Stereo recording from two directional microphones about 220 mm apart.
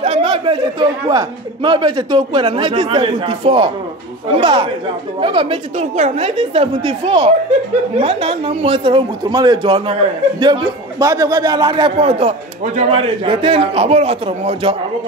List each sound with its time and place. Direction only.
0.0 s a man's voice: 25° right (ahead or behind)